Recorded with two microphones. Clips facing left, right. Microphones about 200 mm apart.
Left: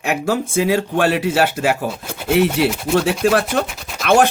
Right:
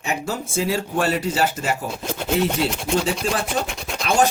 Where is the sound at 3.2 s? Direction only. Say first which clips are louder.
Left 7 dB; 65° left (ahead or behind).